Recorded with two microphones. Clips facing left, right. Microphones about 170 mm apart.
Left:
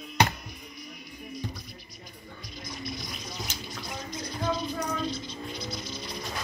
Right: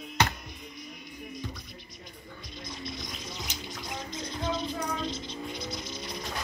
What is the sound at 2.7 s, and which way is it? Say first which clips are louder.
Music: left 2 dB; 25° right (ahead or behind).